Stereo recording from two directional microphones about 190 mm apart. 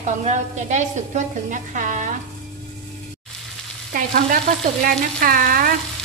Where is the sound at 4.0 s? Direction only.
50° right (ahead or behind).